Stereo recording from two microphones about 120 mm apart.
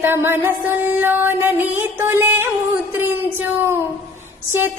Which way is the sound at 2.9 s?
15° right (ahead or behind).